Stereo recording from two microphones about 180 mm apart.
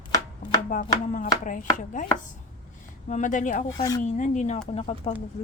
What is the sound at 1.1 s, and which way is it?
Speech, 45° left (ahead or behind).